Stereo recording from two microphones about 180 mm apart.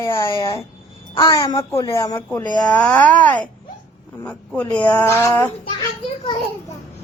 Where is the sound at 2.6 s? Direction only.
5° left (ahead or behind).